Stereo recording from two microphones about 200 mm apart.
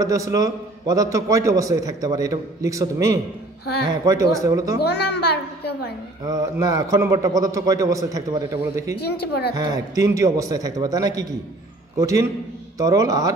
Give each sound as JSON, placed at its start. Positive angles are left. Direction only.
{"t": 0.0, "sound": "a man's voice", "side_deg": -15}
{"t": 4.7, "sound": "a woman's voice", "side_deg": 55}
{"t": 6.2, "sound": "a man's voice", "side_deg": -20}
{"t": 9.0, "sound": "a woman's voice", "side_deg": 55}
{"t": 9.6, "sound": "a man's voice", "side_deg": -15}